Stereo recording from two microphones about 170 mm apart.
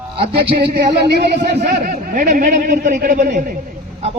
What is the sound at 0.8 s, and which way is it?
A man's voice, 70° right (ahead or behind).